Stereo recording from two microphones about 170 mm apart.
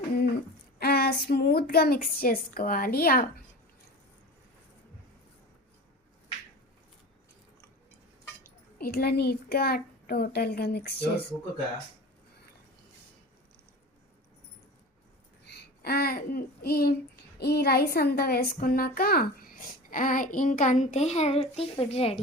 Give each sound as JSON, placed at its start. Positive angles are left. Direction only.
{"t": 0.8, "sound": "speech", "side_deg": 65}
{"t": 8.8, "sound": "speech", "side_deg": 65}
{"t": 15.4, "sound": "a child's voice", "side_deg": 70}